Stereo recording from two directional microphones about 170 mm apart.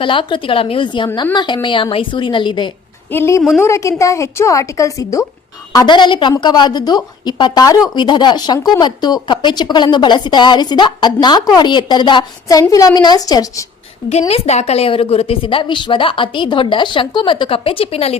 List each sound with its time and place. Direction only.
0.0 s a woman's voice: 30° left (ahead or behind)
3.1 s a woman's voice: 15° left (ahead or behind)
14.1 s a woman's voice: 35° left (ahead or behind)